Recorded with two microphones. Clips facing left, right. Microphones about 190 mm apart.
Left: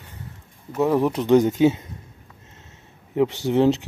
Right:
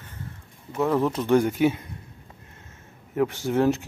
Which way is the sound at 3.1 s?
20° left (ahead or behind).